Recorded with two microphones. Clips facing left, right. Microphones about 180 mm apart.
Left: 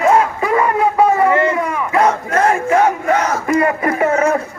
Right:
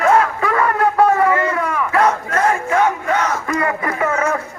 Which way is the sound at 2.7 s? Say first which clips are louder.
Left 4 dB; 40° left (ahead or behind).